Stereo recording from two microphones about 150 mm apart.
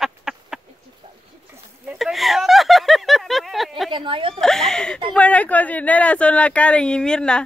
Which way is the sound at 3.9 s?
35° right (ahead or behind).